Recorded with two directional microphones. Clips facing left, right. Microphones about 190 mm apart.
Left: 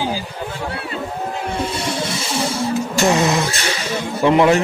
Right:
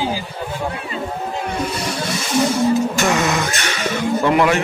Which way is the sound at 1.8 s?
25° left (ahead or behind).